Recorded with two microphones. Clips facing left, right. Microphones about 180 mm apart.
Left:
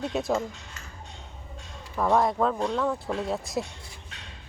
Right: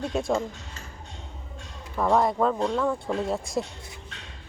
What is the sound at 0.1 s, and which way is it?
Speech, centre (ahead or behind).